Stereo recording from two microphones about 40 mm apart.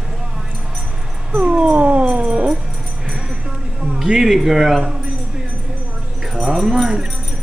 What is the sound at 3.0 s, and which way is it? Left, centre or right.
Music, centre.